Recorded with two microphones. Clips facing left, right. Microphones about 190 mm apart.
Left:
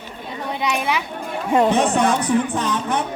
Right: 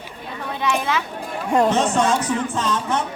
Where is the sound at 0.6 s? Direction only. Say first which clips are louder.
Right 1 dB; 15° left (ahead or behind).